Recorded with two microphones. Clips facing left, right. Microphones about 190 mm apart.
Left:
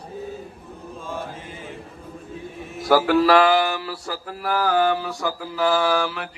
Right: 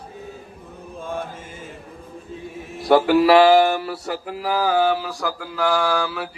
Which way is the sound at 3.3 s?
25° right (ahead or behind).